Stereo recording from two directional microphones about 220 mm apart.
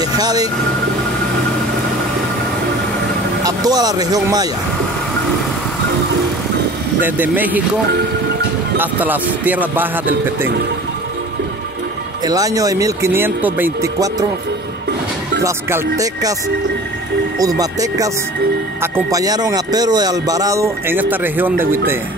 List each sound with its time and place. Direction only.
0.0 s vehicle: 15° right (ahead or behind)
3.4 s speech: 15° right (ahead or behind)
7.0 s speech: 10° right (ahead or behind)
8.7 s speech: 10° right (ahead or behind)
12.3 s speech: 15° right (ahead or behind)
15.4 s speech: 15° right (ahead or behind)
17.4 s speech: 15° right (ahead or behind)